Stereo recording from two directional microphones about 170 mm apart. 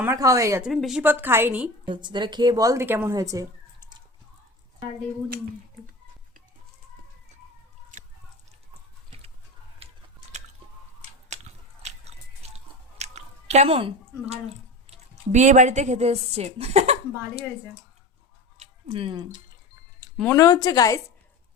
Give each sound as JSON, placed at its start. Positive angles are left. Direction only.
{"t": 0.0, "sound": "a woman's voice", "side_deg": -15}
{"t": 0.6, "sound": "a woman's voice", "side_deg": 0}
{"t": 1.9, "sound": "speech", "side_deg": -25}
{"t": 11.3, "sound": "a sound", "side_deg": -40}
{"t": 11.8, "sound": "chewing", "side_deg": -40}
{"t": 14.8, "sound": "speech", "side_deg": -45}
{"t": 18.6, "sound": "speech", "side_deg": -35}
{"t": 20.3, "sound": "speech", "side_deg": 20}